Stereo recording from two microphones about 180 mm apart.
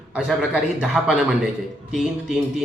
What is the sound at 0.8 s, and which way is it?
A man's voice, 5° right (ahead or behind).